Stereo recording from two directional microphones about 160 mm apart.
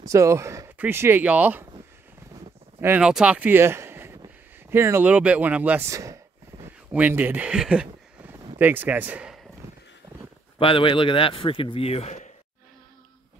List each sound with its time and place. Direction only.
0.0 s speech: 20° right (ahead or behind)
2.8 s speech: 10° right (ahead or behind)
10.6 s a man's voice: 35° left (ahead or behind)